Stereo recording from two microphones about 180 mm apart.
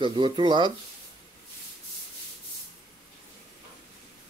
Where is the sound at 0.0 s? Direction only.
25° right (ahead or behind).